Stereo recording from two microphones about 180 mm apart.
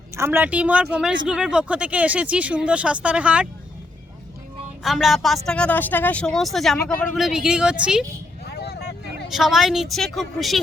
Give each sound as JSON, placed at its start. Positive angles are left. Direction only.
{"t": 0.2, "sound": "speech", "side_deg": -10}
{"t": 4.8, "sound": "speech", "side_deg": 0}
{"t": 8.4, "sound": "vehicle", "side_deg": 65}
{"t": 9.3, "sound": "speech", "side_deg": 0}